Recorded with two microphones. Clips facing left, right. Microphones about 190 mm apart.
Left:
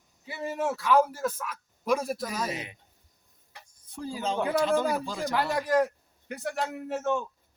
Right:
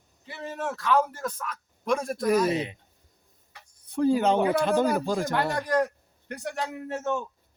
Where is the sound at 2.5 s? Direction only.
25° right (ahead or behind).